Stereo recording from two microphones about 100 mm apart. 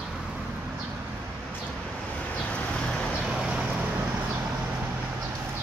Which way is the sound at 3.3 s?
5° right (ahead or behind).